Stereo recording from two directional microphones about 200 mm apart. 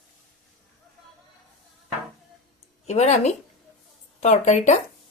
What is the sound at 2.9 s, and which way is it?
Speech, 35° left (ahead or behind).